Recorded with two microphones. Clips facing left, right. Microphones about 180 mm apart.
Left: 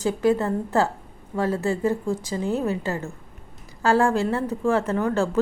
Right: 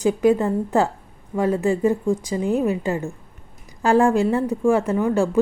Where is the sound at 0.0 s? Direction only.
15° right (ahead or behind).